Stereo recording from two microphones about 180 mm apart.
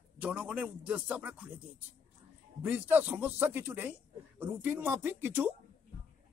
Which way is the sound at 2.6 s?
10° right (ahead or behind).